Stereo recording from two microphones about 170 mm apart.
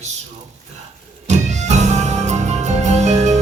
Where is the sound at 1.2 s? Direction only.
40° right (ahead or behind).